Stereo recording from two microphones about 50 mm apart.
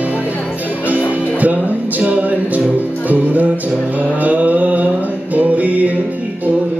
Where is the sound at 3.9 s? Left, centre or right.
Right.